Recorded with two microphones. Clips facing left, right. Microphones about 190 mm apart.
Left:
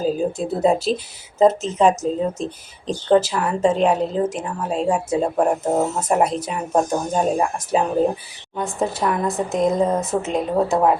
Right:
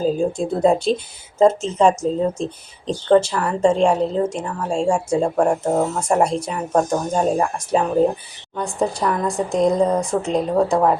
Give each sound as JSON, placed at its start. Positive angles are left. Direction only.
{"t": 0.0, "sound": "speech", "side_deg": 5}